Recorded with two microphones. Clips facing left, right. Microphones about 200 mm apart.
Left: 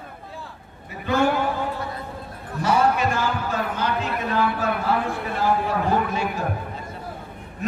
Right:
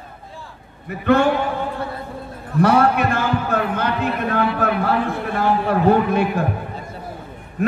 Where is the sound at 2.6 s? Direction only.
60° right (ahead or behind).